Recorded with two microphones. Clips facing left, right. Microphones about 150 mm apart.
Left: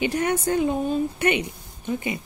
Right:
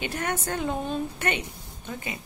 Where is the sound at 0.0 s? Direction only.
15° left (ahead or behind).